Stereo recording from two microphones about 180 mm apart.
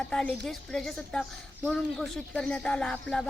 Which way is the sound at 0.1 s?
5° left (ahead or behind).